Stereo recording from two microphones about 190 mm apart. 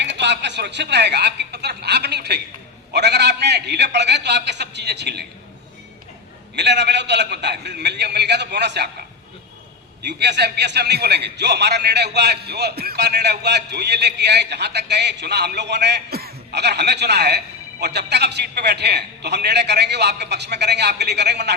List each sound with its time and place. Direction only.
0.0 s a man's voice: 65° right (ahead or behind)
6.6 s a man's voice: 65° right (ahead or behind)
10.0 s a man's voice: 60° right (ahead or behind)